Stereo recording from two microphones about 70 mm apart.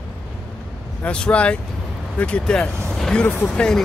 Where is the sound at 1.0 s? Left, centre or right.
Centre.